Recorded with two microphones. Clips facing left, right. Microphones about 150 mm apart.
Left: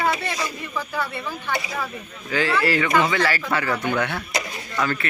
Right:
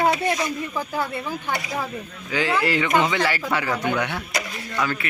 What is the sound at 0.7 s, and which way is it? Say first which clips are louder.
Speech: left 2 dB; 20° right (ahead or behind).